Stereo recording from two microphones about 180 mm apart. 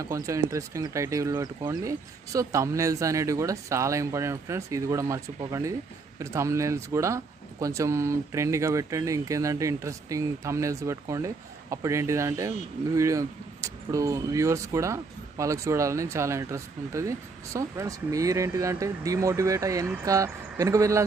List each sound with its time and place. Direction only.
0.0 s speech: 15° right (ahead or behind)